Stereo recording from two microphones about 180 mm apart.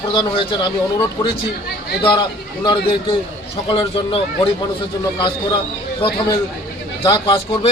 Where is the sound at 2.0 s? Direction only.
25° left (ahead or behind).